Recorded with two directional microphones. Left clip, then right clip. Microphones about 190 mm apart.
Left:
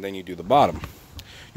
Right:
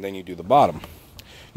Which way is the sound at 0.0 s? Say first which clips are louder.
Even; 10° right (ahead or behind).